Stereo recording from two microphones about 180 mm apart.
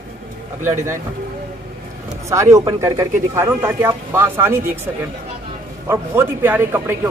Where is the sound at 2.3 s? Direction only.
15° right (ahead or behind).